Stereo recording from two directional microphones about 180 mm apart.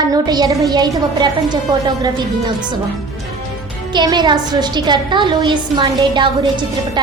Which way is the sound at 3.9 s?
25° right (ahead or behind).